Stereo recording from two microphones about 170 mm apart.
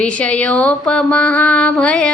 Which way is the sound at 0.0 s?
5° left (ahead or behind).